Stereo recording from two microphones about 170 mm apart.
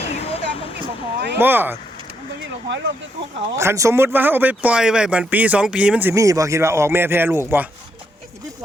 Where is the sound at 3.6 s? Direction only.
15° right (ahead or behind).